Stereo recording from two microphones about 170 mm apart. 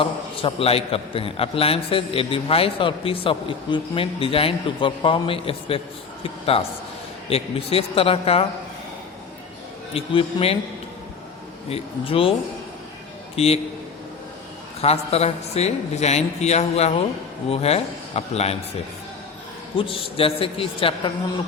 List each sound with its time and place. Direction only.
0.0 s a man's voice: 30° left (ahead or behind)
9.9 s a man's voice: 30° left (ahead or behind)
11.7 s a man's voice: 35° left (ahead or behind)
13.3 s a man's voice: 35° left (ahead or behind)
14.8 s a man's voice: 35° left (ahead or behind)
19.7 s a man's voice: 30° left (ahead or behind)